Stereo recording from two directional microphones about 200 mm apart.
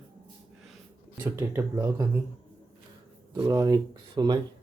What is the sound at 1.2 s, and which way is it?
Speech, 10° right (ahead or behind).